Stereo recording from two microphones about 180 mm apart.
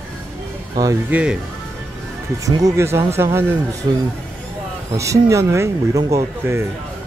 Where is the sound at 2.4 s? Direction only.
20° right (ahead or behind).